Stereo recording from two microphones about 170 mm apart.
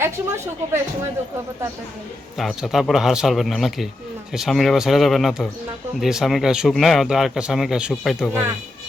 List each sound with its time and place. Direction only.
0.0 s a woman's voice: 15° right (ahead or behind)
2.4 s speech: centre (ahead or behind)